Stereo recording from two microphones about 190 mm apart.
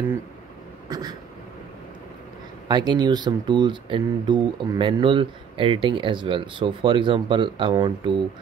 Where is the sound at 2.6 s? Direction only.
20° right (ahead or behind).